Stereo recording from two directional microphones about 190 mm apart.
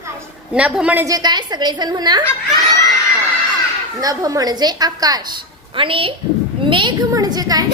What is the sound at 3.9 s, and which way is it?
A woman's voice, 20° right (ahead or behind).